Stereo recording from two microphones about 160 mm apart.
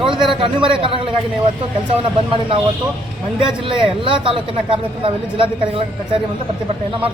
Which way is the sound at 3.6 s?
35° right (ahead or behind).